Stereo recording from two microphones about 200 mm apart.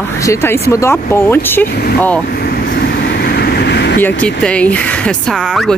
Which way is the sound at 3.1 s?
55° left (ahead or behind).